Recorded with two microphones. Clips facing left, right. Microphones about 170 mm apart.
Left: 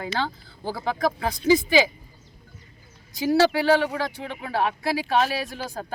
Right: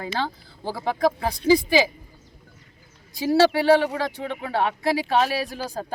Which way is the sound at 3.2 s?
30° right (ahead or behind).